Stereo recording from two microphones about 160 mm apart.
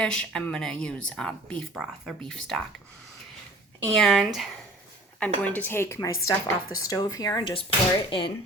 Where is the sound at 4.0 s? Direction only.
Centre (ahead or behind); by 7.4 s 20° left (ahead or behind).